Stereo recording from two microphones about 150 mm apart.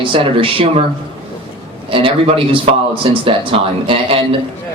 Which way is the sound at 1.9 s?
35° right (ahead or behind).